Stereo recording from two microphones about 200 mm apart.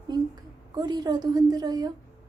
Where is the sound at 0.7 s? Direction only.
20° right (ahead or behind).